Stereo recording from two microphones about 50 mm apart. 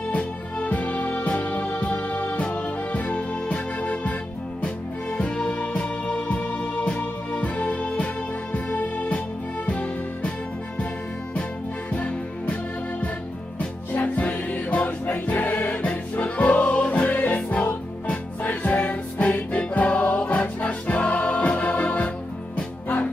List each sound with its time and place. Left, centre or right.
0.1 s music: left
11.9 s music: left
14.0 s music: left
22.6 s music: left